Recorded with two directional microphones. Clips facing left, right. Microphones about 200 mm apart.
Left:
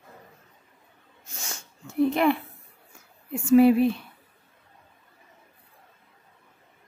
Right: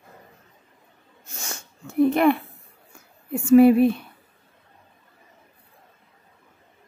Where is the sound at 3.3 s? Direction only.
55° right (ahead or behind).